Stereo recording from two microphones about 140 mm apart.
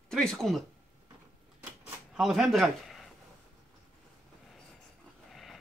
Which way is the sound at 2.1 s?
5° right (ahead or behind).